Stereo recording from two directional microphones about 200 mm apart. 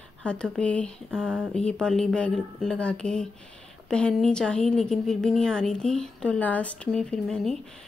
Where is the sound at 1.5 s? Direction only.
5° left (ahead or behind).